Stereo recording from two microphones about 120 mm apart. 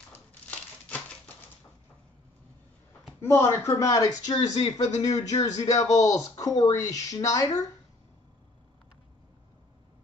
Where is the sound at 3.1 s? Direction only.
20° left (ahead or behind).